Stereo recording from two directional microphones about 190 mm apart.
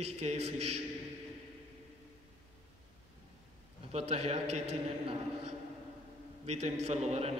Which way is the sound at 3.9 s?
30° right (ahead or behind).